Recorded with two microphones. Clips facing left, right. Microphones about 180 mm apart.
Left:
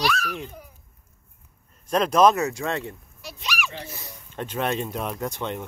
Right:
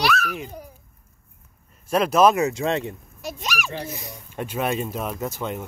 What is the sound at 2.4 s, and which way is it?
Speech, 20° right (ahead or behind).